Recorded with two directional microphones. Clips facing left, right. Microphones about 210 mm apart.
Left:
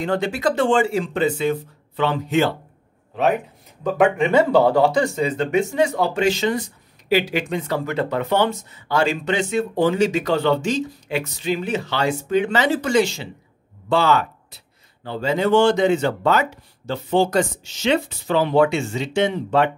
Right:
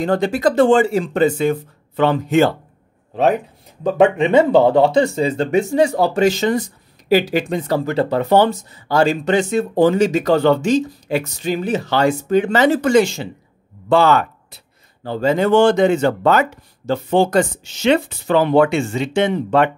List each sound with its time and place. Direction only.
0.0 s speech: 40° right (ahead or behind)
3.8 s speech: 25° right (ahead or behind); by 19.7 s 55° right (ahead or behind)